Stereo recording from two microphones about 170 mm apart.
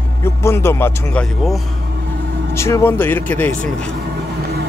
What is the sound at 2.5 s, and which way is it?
A man's voice, 15° left (ahead or behind).